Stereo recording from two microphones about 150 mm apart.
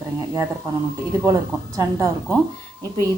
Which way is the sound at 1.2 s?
20° right (ahead or behind).